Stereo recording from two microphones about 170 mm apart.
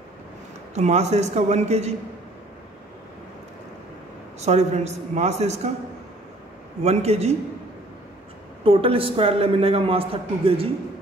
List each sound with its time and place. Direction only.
0.7 s a woman's voice: 40° right (ahead or behind)
4.4 s a woman's voice: 40° right (ahead or behind)
6.8 s a woman's voice: 40° right (ahead or behind)
8.6 s a woman's voice: 30° right (ahead or behind)